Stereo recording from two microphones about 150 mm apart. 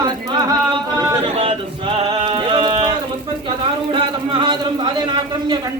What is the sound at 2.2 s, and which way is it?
Music, 35° right (ahead or behind).